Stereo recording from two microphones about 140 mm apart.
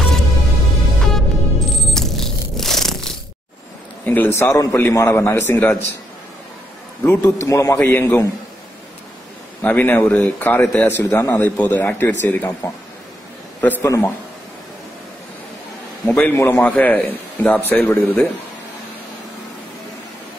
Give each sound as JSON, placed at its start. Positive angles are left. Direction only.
{"t": 1.0, "sound": "a sound", "side_deg": 5}
{"t": 4.0, "sound": "a man's voice", "side_deg": 15}
{"t": 7.0, "sound": "a man's voice", "side_deg": 15}
{"t": 9.6, "sound": "a man's voice", "side_deg": 15}
{"t": 16.1, "sound": "a man's voice", "side_deg": 10}
{"t": 16.3, "sound": "a man's voice", "side_deg": 20}
{"t": 16.6, "sound": "a man's voice", "side_deg": 10}